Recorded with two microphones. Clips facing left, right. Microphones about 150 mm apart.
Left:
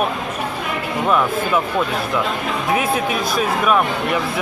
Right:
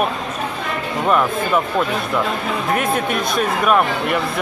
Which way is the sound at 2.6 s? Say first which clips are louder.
Left 1 dB; 5° left (ahead or behind).